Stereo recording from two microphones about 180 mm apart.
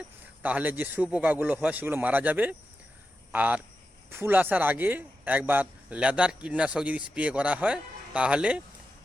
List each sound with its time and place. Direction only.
0.4 s a man's voice: 10° right (ahead or behind)